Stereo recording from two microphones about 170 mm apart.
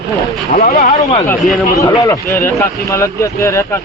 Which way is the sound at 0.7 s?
40° left (ahead or behind).